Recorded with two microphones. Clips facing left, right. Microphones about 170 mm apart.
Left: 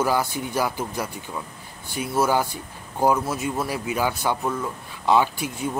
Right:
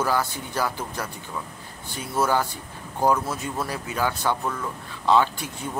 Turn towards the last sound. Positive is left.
turn(degrees=10)  # may be behind; listen again after turning